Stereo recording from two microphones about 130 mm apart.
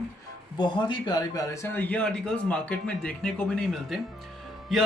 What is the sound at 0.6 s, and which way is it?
A man's voice, 35° left (ahead or behind).